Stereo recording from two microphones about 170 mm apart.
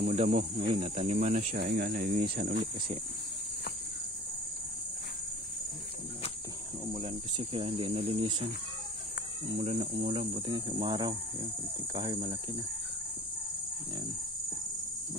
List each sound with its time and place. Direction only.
0.0 s speech: 40° right (ahead or behind)
1.6 s speech: 70° right (ahead or behind); by 2.2 s 55° right (ahead or behind)
2.3 s speech: 85° right
6.9 s speech: 35° right (ahead or behind)
9.5 s speech: 40° right (ahead or behind)